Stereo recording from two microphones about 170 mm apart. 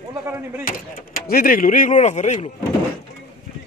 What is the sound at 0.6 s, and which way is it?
Speech, 60° left (ahead or behind).